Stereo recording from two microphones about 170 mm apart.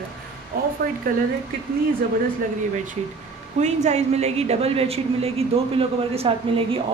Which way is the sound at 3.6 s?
40° right (ahead or behind).